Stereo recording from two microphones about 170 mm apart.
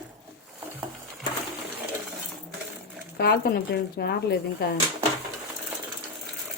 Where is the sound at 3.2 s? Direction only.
65° left (ahead or behind).